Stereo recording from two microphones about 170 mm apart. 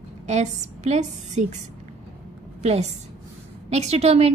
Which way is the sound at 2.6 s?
40° right (ahead or behind).